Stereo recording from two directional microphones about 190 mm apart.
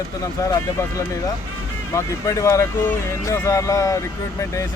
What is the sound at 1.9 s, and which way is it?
Speech, 15° left (ahead or behind).